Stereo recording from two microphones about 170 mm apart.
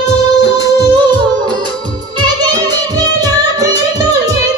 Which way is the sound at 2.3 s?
25° right (ahead or behind).